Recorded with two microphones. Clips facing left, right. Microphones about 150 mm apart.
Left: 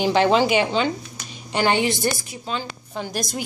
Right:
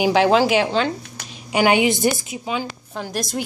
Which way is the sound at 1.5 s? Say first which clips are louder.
Right 4 dB; 10° right (ahead or behind).